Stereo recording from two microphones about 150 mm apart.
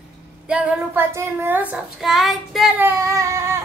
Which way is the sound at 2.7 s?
15° right (ahead or behind).